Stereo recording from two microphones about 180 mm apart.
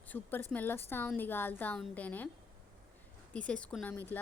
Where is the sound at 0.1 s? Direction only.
10° left (ahead or behind).